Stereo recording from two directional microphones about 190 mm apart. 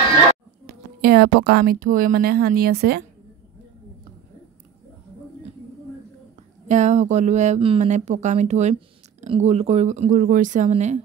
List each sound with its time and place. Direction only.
1.0 s speech: 55° right (ahead or behind)
6.7 s speech: 40° right (ahead or behind)